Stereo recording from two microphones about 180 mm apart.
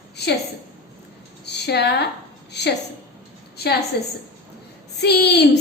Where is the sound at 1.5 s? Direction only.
70° left (ahead or behind).